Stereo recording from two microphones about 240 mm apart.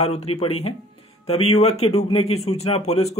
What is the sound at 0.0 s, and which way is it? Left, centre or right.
Speech, left.